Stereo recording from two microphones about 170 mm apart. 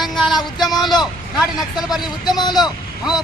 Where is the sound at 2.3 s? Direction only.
25° left (ahead or behind).